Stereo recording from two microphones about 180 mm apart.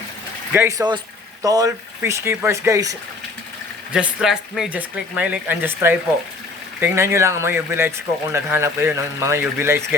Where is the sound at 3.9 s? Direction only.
5° right (ahead or behind).